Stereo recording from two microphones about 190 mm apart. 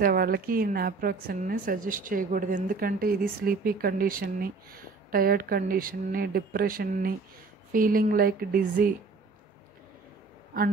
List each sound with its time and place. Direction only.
0.0 s a woman's voice: 50° right (ahead or behind)